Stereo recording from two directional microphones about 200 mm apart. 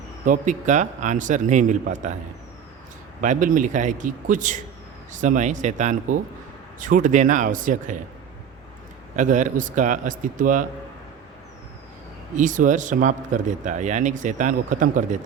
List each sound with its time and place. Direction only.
0.3 s speech: 40° right (ahead or behind)
3.2 s speech: 40° right (ahead or behind)
9.1 s speech: 40° right (ahead or behind)
12.4 s speech: 40° right (ahead or behind)